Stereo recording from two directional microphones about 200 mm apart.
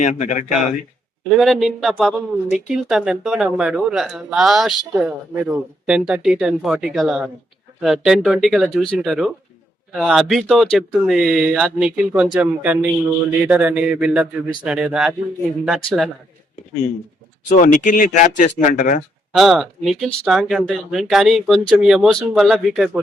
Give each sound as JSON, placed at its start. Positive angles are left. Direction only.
{"t": 0.0, "sound": "speech", "side_deg": 35}
{"t": 1.3, "sound": "speech", "side_deg": 0}
{"t": 17.5, "sound": "speech", "side_deg": 40}
{"t": 19.3, "sound": "speech", "side_deg": 0}